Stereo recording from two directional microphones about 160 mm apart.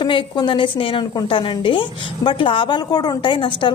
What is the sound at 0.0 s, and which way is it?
A woman's voice, 30° left (ahead or behind).